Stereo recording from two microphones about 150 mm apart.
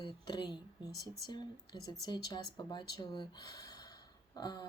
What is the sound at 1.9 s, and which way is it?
Speech, 30° left (ahead or behind).